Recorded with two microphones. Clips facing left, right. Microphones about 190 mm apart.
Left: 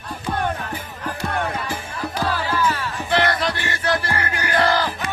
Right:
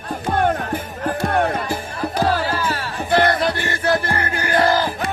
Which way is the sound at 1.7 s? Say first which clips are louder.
Right 4 dB; 40° right (ahead or behind).